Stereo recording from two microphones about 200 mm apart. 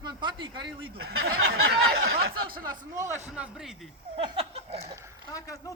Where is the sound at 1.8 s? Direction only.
90° right.